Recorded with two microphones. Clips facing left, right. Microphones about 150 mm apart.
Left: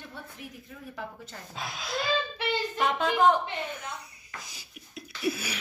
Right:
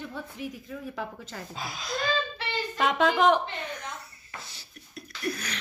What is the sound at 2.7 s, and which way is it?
Speech, 90° right.